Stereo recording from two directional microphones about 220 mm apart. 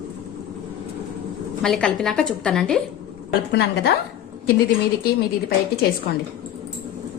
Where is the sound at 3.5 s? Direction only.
50° left (ahead or behind).